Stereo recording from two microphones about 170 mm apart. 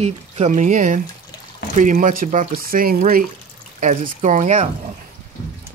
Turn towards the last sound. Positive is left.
turn(degrees=-45)  # may be behind; listen again after turning